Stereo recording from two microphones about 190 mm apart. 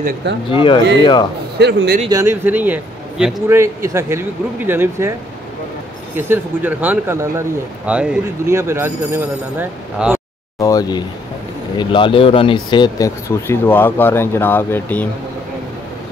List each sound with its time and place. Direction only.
0.5 s speech: 25° left (ahead or behind)
1.6 s speech: 60° right (ahead or behind)
2.0 s speech: 15° right (ahead or behind)
3.4 s speech: 15° right (ahead or behind)
6.1 s speech: 10° right (ahead or behind)
10.6 s speech: 20° left (ahead or behind)